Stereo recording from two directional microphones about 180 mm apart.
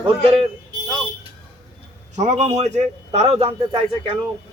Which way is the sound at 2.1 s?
40° right (ahead or behind).